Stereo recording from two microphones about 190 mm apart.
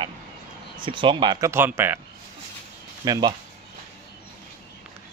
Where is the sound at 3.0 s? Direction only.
25° right (ahead or behind).